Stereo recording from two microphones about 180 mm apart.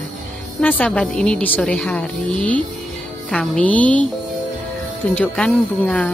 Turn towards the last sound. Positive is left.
turn(degrees=5)  # may be behind; listen again after turning